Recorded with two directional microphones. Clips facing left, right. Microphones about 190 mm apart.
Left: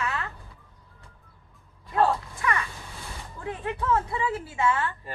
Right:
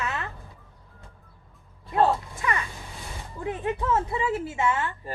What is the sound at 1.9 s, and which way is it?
Speech, 25° right (ahead or behind).